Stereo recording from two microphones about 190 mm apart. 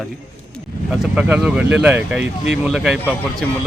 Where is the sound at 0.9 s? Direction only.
5° right (ahead or behind).